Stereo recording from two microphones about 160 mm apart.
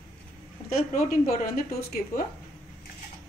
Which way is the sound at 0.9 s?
65° left (ahead or behind).